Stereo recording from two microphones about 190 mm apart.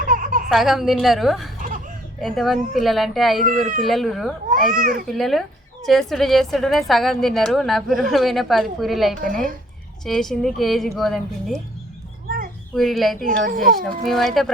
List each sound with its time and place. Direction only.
0.0 s a sound: 45° right (ahead or behind)
0.4 s a woman's voice: centre (ahead or behind)
4.7 s speech: 45° right (ahead or behind)
5.0 s a woman's voice: centre (ahead or behind)
9.2 s speech: 45° right (ahead or behind)
10.0 s a woman's voice: centre (ahead or behind)
12.7 s a woman's voice: centre (ahead or behind)
13.2 s speech: 45° right (ahead or behind)
13.8 s a woman's voice: centre (ahead or behind)